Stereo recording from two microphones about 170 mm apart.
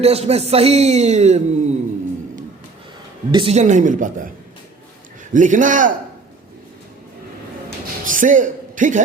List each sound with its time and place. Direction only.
0.0 s a man's voice: 35° right (ahead or behind)
3.3 s speech: 35° right (ahead or behind)
5.3 s speech: 50° right (ahead or behind)
8.0 s a man's voice: 50° right (ahead or behind)